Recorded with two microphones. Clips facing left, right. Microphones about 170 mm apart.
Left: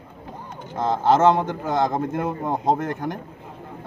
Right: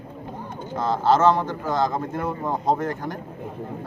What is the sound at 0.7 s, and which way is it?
A man's voice, 20° left (ahead or behind).